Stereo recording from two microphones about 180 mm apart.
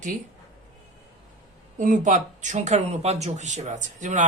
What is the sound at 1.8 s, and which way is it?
Speech, 45° right (ahead or behind).